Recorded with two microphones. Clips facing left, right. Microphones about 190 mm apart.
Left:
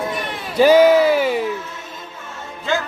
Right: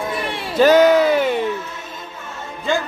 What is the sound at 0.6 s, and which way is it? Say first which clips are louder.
Music: left 1 dB; 10° left (ahead or behind).